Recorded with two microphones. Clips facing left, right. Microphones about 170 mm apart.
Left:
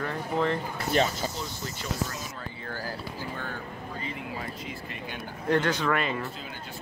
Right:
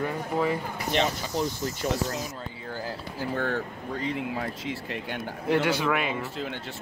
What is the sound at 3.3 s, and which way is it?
Speech, 75° right (ahead or behind).